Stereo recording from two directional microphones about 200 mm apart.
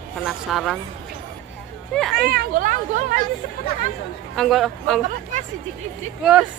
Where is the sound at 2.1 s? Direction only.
50° right (ahead or behind).